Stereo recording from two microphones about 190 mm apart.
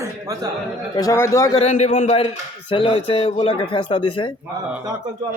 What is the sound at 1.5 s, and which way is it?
Speech, 35° left (ahead or behind).